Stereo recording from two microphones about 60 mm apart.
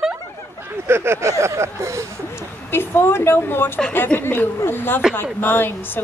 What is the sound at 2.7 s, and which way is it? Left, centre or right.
A woman's voice, left.